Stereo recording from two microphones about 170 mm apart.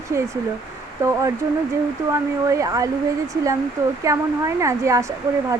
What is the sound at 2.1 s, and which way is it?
Speech, 20° right (ahead or behind).